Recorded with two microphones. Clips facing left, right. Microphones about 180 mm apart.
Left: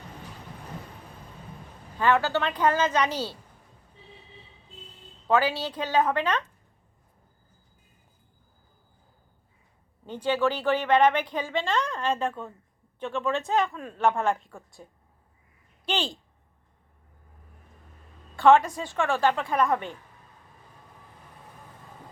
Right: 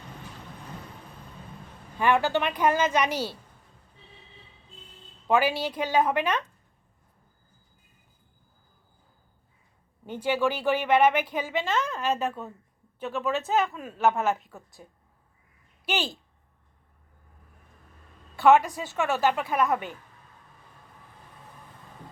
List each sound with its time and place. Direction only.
2.0 s speech: 15° right (ahead or behind)
5.3 s speech: 10° right (ahead or behind)
10.1 s speech: 10° right (ahead or behind)
15.9 s speech: 10° right (ahead or behind)
18.3 s speech: 5° right (ahead or behind)